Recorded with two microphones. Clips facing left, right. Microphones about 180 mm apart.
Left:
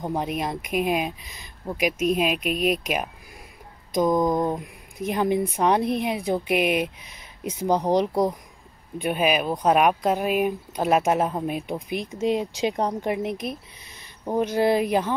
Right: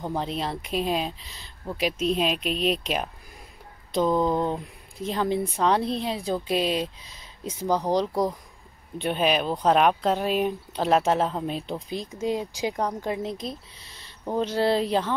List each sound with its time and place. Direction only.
0.0 s speech: 15° left (ahead or behind)
8.9 s speech: 10° left (ahead or behind)